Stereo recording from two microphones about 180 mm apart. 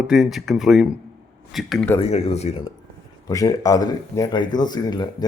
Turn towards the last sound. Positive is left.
turn(degrees=20)  # may be behind; listen again after turning